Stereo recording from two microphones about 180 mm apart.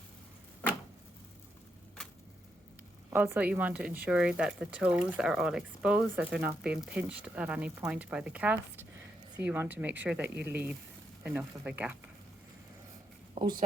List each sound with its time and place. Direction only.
0.6 s a sound: 10° left (ahead or behind)
3.1 s speech: 10° right (ahead or behind)
13.4 s speech: 45° right (ahead or behind)